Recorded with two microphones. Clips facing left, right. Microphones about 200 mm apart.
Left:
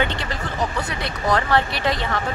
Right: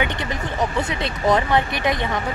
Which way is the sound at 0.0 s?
15° right (ahead or behind).